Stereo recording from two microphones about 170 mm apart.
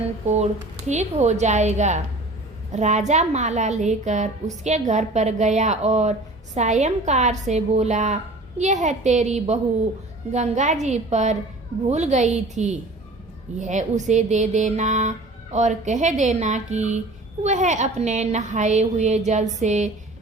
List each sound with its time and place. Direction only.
0.3 s a woman's voice: 40° right (ahead or behind)